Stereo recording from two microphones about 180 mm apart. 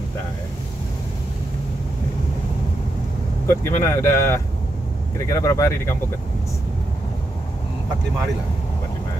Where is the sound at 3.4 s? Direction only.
15° left (ahead or behind).